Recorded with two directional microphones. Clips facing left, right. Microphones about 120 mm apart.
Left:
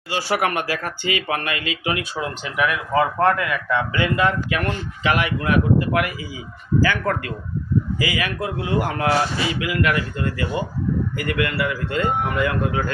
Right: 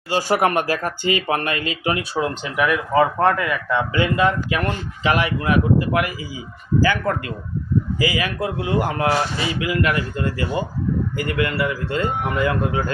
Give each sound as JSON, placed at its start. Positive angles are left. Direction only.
{"t": 0.1, "sound": "speech", "side_deg": -40}